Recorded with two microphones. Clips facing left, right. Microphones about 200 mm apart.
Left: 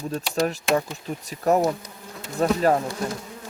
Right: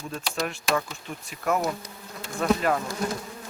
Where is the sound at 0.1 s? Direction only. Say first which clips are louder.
Left 6 dB; 35° left (ahead or behind).